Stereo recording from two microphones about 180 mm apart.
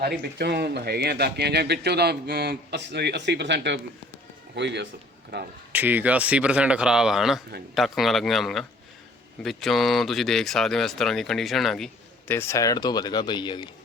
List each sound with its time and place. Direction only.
0.0 s speech: 60° right (ahead or behind)
5.7 s speech: 10° right (ahead or behind)
12.3 s speech: 15° left (ahead or behind)